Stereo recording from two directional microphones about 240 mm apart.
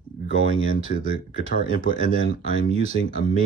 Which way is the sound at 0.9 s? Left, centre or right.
Left.